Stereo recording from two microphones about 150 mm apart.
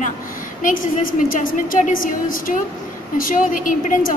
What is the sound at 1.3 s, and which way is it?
A woman's voice, 65° left (ahead or behind).